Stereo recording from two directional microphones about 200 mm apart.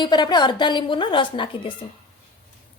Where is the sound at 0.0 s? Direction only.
20° left (ahead or behind).